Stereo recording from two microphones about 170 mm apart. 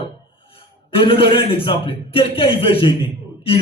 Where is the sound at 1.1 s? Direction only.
30° left (ahead or behind).